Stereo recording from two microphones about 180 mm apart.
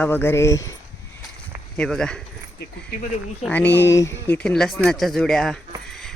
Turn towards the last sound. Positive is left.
turn(degrees=5)  # may be behind; listen again after turning